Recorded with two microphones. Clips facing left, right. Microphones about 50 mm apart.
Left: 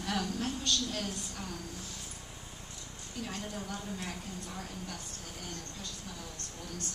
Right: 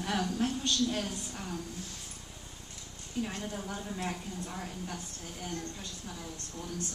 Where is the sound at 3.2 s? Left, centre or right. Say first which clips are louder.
Right 4 dB; right.